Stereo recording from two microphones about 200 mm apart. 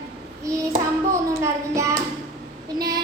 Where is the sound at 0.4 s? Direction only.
15° right (ahead or behind).